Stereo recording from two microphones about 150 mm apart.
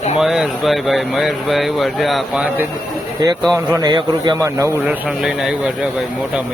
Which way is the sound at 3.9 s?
30° right (ahead or behind).